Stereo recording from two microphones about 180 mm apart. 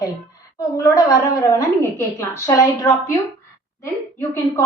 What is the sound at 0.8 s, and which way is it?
A woman's voice, 15° left (ahead or behind).